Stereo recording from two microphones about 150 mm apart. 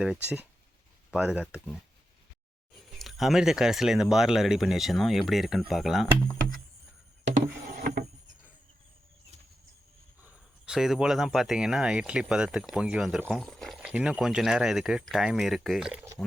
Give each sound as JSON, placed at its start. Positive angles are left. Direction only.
{"t": 0.0, "sound": "speech", "side_deg": -10}
{"t": 7.8, "sound": "a sound", "side_deg": -90}
{"t": 10.7, "sound": "speech", "side_deg": -5}